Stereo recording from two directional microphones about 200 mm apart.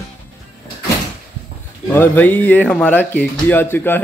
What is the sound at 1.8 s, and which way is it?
Speech, 10° left (ahead or behind).